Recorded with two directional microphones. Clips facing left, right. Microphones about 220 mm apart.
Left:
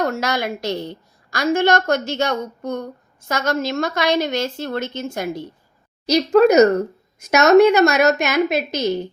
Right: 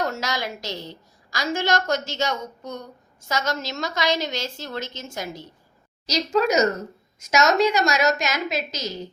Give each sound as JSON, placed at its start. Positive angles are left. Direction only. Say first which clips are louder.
{"t": 0.0, "sound": "a woman's voice", "louder": "left 6 dB", "side_deg": 55}